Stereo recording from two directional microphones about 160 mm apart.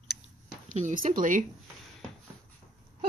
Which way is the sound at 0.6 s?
50° right (ahead or behind).